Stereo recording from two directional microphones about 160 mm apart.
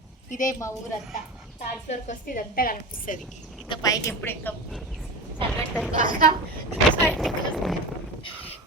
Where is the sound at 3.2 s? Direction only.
Centre (ahead or behind).